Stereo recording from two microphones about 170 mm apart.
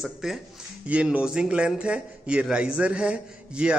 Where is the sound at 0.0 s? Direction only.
Centre (ahead or behind).